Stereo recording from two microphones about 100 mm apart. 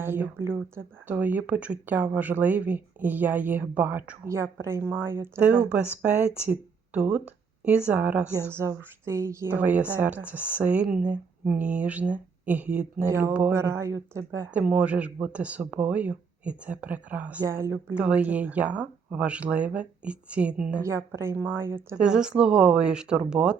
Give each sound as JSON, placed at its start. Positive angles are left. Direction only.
{"t": 0.0, "sound": "speech", "side_deg": -20}
{"t": 9.6, "sound": "speech", "side_deg": -15}
{"t": 13.1, "sound": "speech", "side_deg": -30}
{"t": 14.5, "sound": "speech", "side_deg": -15}
{"t": 17.4, "sound": "speech", "side_deg": -25}
{"t": 17.9, "sound": "speech", "side_deg": -15}
{"t": 20.8, "sound": "speech", "side_deg": -25}
{"t": 22.0, "sound": "speech", "side_deg": -10}